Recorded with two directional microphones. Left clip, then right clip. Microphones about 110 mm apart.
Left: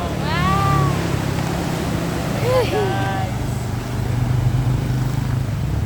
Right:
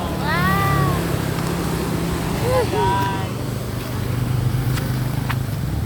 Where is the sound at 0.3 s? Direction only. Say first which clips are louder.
Right 1 dB; centre (ahead or behind).